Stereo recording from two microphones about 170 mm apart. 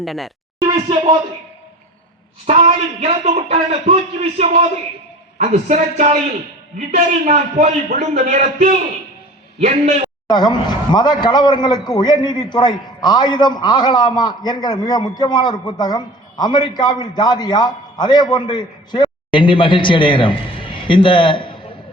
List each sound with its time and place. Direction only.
0.0 s a woman's voice: centre (ahead or behind)
0.6 s speech: 25° right (ahead or behind)
3.0 s a man's voice: 40° right (ahead or behind)
10.2 s a man's voice: 25° left (ahead or behind)